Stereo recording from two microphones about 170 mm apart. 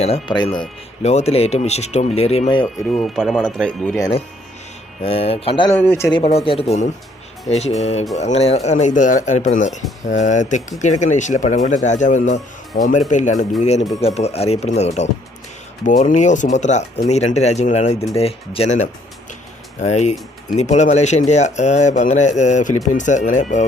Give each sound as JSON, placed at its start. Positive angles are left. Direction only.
{"t": 0.0, "sound": "speech", "side_deg": 35}
{"t": 2.9, "sound": "speech", "side_deg": 0}
{"t": 5.0, "sound": "speech", "side_deg": 35}
{"t": 5.7, "sound": "speech", "side_deg": 10}
{"t": 6.1, "sound": "speech", "side_deg": 35}